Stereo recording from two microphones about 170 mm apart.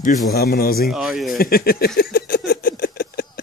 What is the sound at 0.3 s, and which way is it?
Speech, 65° left (ahead or behind).